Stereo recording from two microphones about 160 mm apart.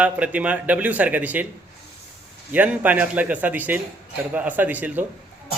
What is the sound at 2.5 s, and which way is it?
A man's voice, 10° right (ahead or behind).